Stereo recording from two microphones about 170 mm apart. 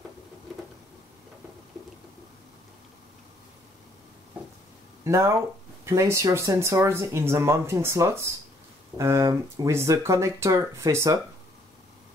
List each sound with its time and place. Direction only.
5.0 s speech: 15° right (ahead or behind)